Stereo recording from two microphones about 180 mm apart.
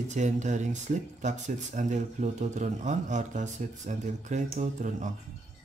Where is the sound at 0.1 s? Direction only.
40° right (ahead or behind).